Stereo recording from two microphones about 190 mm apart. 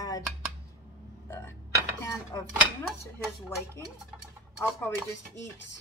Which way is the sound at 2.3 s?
15° left (ahead or behind).